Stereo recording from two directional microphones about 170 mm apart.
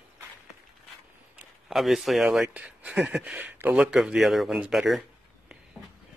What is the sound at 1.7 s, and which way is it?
Speech, centre (ahead or behind).